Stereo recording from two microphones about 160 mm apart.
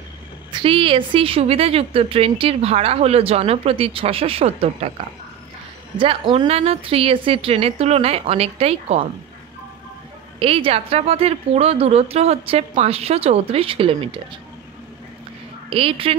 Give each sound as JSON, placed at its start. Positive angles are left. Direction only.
{"t": 0.5, "sound": "a woman's voice", "side_deg": -30}
{"t": 10.4, "sound": "a woman's voice", "side_deg": -35}
{"t": 15.7, "sound": "a woman's voice", "side_deg": -35}